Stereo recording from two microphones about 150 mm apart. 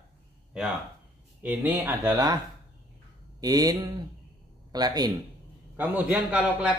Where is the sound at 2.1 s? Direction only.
25° right (ahead or behind).